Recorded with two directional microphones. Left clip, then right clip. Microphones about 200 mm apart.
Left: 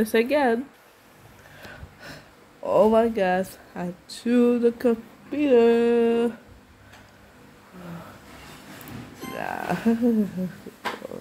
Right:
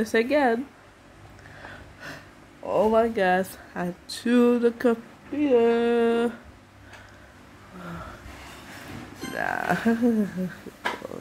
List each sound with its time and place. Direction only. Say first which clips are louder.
0.0 s speech: left 1 dB; centre (ahead or behind)
2.0 s gasp: right 5 dB; centre (ahead or behind)
2.6 s speech: left 3 dB; 15° left (ahead or behind)
3.0 s speech: even; 5° right (ahead or behind)
5.3 s speech: left 2 dB; 15° left (ahead or behind); by 6.3 s centre (ahead or behind)
9.3 s speech: right 3 dB; 5° right (ahead or behind)